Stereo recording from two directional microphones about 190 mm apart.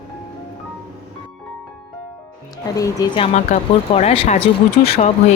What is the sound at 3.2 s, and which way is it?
Speech, 35° left (ahead or behind).